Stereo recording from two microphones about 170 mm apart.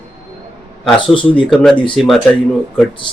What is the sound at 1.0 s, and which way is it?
Speech, 30° left (ahead or behind).